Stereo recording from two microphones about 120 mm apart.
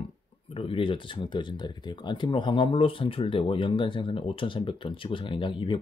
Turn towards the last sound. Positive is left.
turn(degrees=45)  # may be behind; listen again after turning